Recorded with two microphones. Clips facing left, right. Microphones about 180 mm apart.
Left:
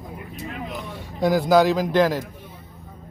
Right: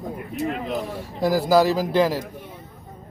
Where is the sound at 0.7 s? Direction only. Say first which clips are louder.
Right 6 dB; 35° right (ahead or behind).